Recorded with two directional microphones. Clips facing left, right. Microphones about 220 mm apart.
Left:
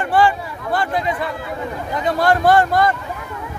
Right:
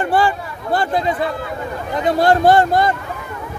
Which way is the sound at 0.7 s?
30° right (ahead or behind).